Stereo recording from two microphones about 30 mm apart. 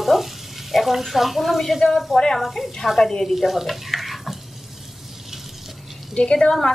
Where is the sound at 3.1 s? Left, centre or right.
Centre.